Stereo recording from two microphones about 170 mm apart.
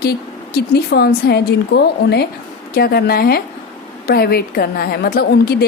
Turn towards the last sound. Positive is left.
turn(degrees=65)  # may be behind; listen again after turning